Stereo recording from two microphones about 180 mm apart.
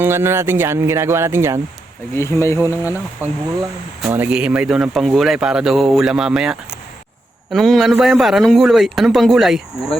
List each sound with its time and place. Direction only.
0.0 s speech: 15° right (ahead or behind)
2.1 s speech: 15° left (ahead or behind)
2.8 s speech: 10° right (ahead or behind)